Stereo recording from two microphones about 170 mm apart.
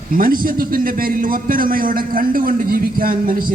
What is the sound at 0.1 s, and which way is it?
A man's voice, 55° right (ahead or behind).